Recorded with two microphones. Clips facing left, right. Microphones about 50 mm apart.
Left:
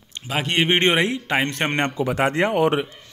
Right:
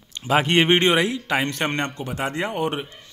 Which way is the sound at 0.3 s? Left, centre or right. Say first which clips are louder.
Right 4 dB; centre.